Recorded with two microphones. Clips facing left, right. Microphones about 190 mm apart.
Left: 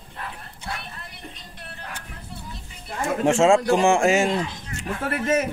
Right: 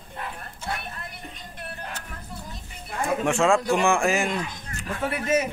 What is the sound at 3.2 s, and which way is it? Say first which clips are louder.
Speech: left 5 dB; 25° left (ahead or behind).